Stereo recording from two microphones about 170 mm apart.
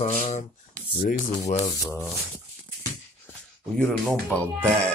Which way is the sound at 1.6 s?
20° left (ahead or behind).